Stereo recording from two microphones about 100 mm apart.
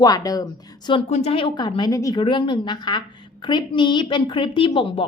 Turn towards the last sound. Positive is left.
turn(degrees=60)  # may be behind; listen again after turning